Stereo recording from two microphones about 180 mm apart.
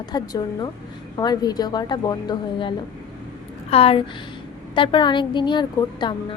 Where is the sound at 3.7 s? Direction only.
30° left (ahead or behind).